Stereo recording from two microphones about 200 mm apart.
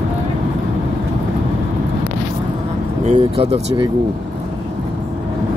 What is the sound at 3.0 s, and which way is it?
Speech, 30° right (ahead or behind).